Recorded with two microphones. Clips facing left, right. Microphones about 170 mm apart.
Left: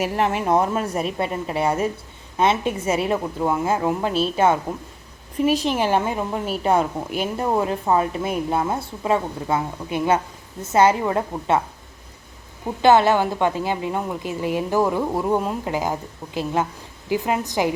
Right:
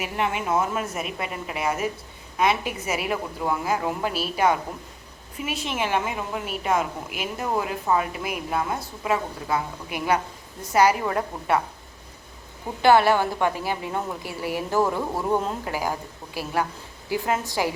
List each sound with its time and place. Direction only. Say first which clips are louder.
0.0 s a woman's voice: left 5 dB; 40° left (ahead or behind); by 11.6 s 25° left (ahead or behind)
12.8 s a woman's voice: left 2 dB; 20° left (ahead or behind)